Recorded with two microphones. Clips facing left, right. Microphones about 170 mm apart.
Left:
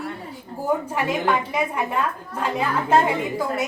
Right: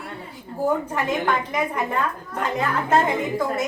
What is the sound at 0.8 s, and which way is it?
A woman's voice, 10° left (ahead or behind).